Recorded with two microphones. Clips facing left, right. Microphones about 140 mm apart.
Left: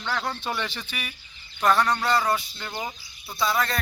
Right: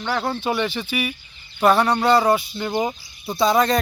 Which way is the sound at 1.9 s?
25° right (ahead or behind).